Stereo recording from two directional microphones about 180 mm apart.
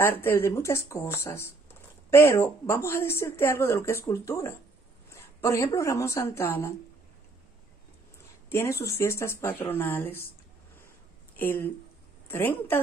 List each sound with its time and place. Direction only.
0.0 s a woman's voice: 10° left (ahead or behind)
8.5 s speech: 15° left (ahead or behind)
11.3 s speech: 10° left (ahead or behind)